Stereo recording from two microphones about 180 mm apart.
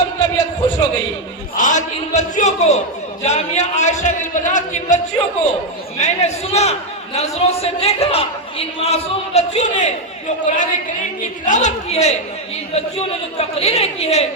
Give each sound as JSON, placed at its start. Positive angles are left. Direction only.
{"t": 0.2, "sound": "a sound", "side_deg": 20}
{"t": 1.5, "sound": "a man's voice", "side_deg": 45}
{"t": 6.0, "sound": "a man's voice", "side_deg": 35}
{"t": 13.6, "sound": "a man's voice", "side_deg": 35}